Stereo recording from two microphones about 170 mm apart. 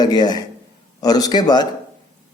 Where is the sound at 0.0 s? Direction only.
25° left (ahead or behind).